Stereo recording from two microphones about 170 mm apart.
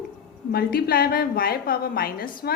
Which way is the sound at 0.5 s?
60° left (ahead or behind).